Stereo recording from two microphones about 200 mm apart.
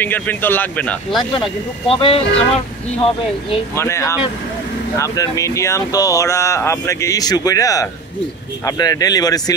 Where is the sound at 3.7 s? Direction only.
15° left (ahead or behind).